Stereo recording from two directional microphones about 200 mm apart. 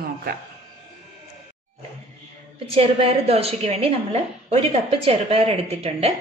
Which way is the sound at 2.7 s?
30° right (ahead or behind).